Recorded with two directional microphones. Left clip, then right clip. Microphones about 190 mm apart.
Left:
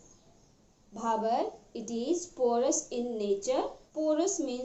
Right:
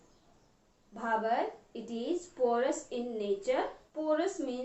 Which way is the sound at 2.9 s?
15° right (ahead or behind).